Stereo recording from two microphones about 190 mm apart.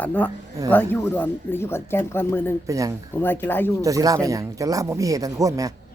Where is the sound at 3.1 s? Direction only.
10° left (ahead or behind).